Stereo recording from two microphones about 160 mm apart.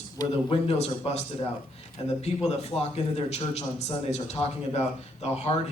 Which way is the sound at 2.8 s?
40° left (ahead or behind).